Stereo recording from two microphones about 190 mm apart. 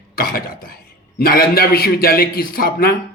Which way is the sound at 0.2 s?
50° left (ahead or behind).